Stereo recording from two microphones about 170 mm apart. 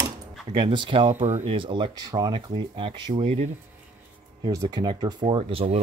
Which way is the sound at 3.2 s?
40° right (ahead or behind).